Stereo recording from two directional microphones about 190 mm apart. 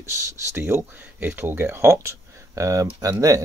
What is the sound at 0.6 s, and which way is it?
Speech, 10° right (ahead or behind).